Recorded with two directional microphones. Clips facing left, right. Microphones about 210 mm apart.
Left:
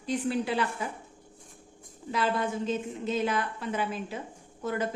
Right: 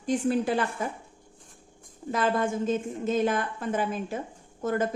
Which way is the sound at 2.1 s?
45° right (ahead or behind).